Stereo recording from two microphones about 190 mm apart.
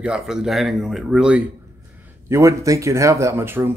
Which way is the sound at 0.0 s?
5° right (ahead or behind).